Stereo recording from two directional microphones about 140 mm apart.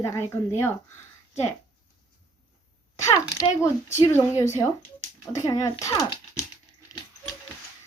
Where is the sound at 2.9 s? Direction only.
25° left (ahead or behind).